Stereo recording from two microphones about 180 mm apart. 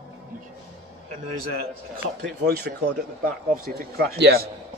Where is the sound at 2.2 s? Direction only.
60° right (ahead or behind).